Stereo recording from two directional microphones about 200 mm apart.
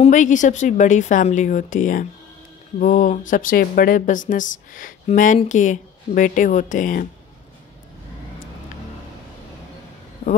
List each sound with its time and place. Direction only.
0.0 s speech: 40° left (ahead or behind)